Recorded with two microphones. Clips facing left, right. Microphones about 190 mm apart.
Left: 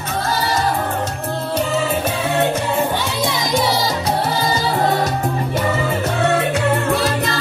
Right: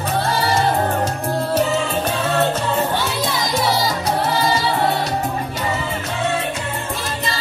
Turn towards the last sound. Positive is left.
turn(degrees=70)  # may be behind; listen again after turning